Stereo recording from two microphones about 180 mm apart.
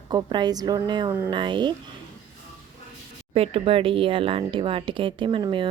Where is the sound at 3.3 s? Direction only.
35° right (ahead or behind).